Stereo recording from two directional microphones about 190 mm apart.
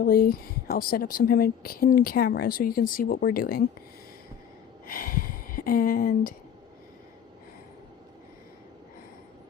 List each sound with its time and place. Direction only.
0.0 s speech: 50° left (ahead or behind)
4.9 s speech: 50° left (ahead or behind)